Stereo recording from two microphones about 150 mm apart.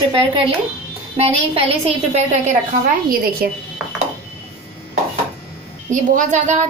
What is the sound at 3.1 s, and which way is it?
Speech, 75° right (ahead or behind).